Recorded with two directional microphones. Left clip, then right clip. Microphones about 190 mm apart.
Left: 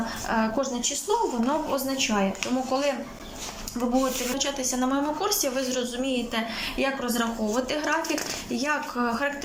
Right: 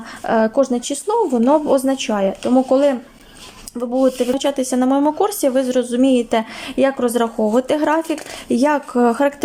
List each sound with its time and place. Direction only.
0.3 s speech: 45° right (ahead or behind)